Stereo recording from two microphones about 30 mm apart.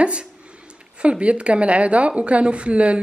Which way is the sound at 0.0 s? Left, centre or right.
Right.